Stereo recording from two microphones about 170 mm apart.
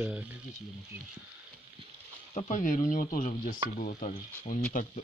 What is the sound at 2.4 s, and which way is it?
Speech, 45° left (ahead or behind).